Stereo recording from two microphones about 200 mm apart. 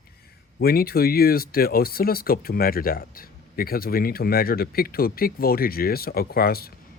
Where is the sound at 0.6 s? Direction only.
50° left (ahead or behind).